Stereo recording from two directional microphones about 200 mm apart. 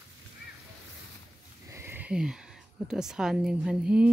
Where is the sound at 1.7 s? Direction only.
10° right (ahead or behind).